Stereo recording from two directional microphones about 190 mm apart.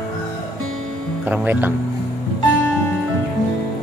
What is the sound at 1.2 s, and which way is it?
Speech, 10° right (ahead or behind).